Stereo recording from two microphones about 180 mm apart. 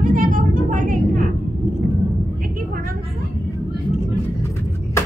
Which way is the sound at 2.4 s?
50° right (ahead or behind).